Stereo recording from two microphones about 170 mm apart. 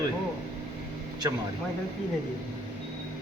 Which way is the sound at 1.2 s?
20° right (ahead or behind).